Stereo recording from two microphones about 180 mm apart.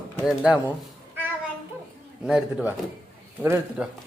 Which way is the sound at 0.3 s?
5° right (ahead or behind).